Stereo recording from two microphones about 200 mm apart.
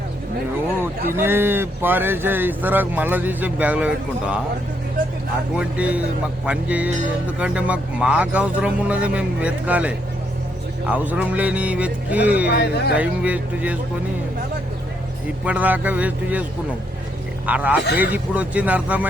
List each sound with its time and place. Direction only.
1.1 s speech: 10° right (ahead or behind)
5.5 s speech: 5° right (ahead or behind)
12.5 s speech: 50° left (ahead or behind)
13.0 s speech: 5° right (ahead or behind)
15.4 s speech: 10° right (ahead or behind)